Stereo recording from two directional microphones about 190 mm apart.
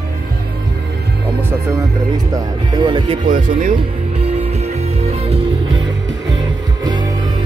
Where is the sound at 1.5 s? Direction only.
15° right (ahead or behind).